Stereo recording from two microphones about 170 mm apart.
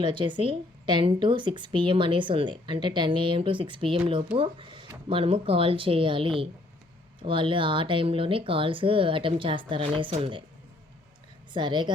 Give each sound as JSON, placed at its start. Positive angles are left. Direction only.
{"t": 0.0, "sound": "a woman's voice", "side_deg": -30}
{"t": 11.5, "sound": "a woman's voice", "side_deg": -25}